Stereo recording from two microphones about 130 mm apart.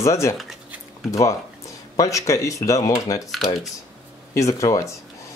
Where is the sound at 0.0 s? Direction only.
25° left (ahead or behind).